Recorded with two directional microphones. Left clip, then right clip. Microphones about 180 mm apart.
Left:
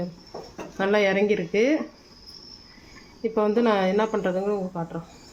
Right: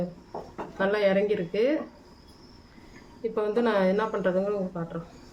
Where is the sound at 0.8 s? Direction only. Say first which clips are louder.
Left 2 dB; 40° left (ahead or behind).